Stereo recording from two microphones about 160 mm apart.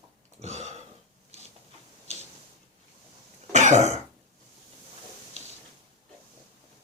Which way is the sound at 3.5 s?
50° right (ahead or behind).